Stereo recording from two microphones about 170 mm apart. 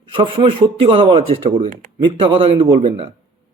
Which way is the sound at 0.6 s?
30° right (ahead or behind).